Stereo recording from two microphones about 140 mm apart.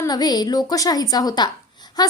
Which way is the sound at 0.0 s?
30° left (ahead or behind).